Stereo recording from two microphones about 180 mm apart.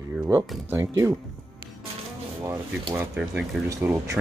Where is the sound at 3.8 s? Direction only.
10° right (ahead or behind).